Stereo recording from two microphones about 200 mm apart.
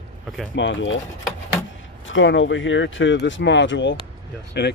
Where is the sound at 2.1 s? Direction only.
70° left (ahead or behind).